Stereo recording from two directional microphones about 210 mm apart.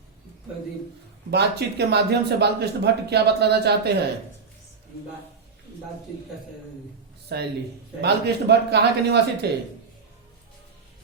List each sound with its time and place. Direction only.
1.3 s speech: 50° right (ahead or behind)
7.3 s speech: 50° right (ahead or behind)